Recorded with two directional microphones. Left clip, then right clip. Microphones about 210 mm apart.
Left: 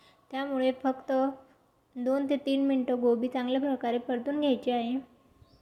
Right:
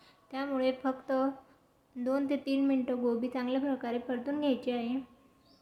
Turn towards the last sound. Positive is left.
turn(degrees=15)  # may be behind; listen again after turning